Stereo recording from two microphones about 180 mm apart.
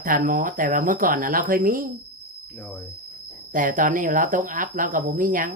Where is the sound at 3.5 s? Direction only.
45° right (ahead or behind).